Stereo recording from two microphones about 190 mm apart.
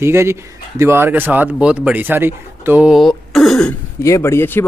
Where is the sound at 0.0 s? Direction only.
15° right (ahead or behind); by 3.7 s 5° left (ahead or behind).